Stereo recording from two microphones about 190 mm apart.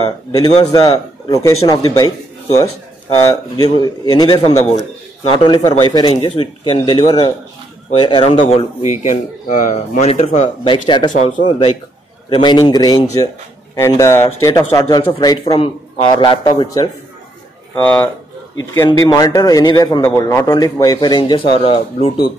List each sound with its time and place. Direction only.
0.3 s a man's voice: 20° left (ahead or behind)
4.5 s speech: 35° left (ahead or behind)
11.1 s speech: 40° left (ahead or behind)
11.4 s speech: 25° left (ahead or behind)
17.8 s a man's voice: 10° left (ahead or behind)
18.9 s speech: 20° left (ahead or behind)